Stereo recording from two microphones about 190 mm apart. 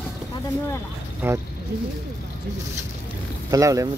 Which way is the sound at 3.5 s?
15° right (ahead or behind).